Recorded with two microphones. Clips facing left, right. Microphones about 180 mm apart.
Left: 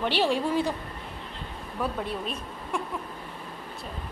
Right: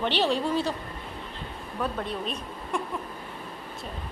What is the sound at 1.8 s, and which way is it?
Speech, 10° left (ahead or behind).